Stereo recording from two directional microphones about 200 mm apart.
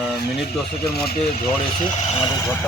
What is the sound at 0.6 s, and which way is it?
Speech, 50° left (ahead or behind).